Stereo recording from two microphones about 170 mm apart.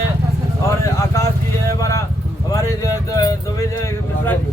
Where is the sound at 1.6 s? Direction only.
20° left (ahead or behind).